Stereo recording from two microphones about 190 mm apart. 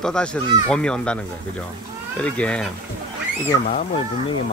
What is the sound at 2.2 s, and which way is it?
Speech, 5° left (ahead or behind).